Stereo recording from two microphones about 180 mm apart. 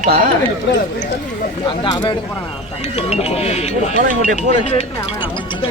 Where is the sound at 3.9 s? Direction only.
50° right (ahead or behind).